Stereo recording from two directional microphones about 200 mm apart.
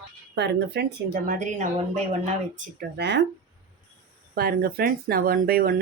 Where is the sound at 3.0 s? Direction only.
60° right (ahead or behind).